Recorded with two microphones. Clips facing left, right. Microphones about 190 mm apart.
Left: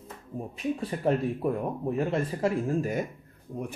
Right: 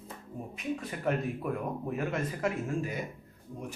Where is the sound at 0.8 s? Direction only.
30° left (ahead or behind).